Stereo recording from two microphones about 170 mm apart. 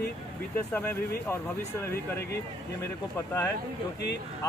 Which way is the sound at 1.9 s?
65° left (ahead or behind).